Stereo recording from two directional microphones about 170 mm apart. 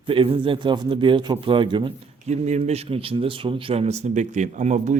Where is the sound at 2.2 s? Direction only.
40° right (ahead or behind).